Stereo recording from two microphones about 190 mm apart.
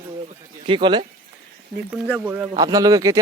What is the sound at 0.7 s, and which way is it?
Speech, 25° right (ahead or behind).